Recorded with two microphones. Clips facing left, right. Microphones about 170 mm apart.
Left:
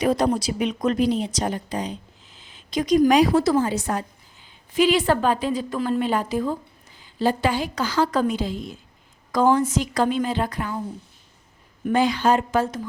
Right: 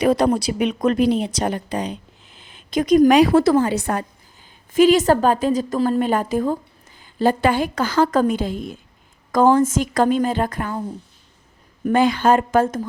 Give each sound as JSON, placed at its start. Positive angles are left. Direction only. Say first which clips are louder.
{"t": 0.0, "sound": "speech", "louder": "right 4 dB", "side_deg": -65}
{"t": 4.7, "sound": "a woman's voice", "louder": "right 5 dB", "side_deg": -45}
{"t": 11.9, "sound": "a woman's voice", "louder": "right 3 dB", "side_deg": -55}